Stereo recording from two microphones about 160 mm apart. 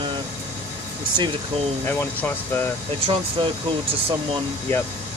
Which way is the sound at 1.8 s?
15° left (ahead or behind).